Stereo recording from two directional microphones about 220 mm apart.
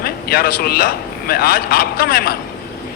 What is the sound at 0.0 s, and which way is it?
A man's voice, 45° left (ahead or behind).